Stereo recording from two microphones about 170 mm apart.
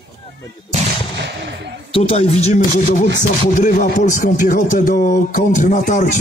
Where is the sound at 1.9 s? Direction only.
35° left (ahead or behind).